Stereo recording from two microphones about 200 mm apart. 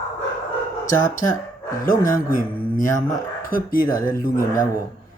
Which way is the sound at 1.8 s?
45° left (ahead or behind).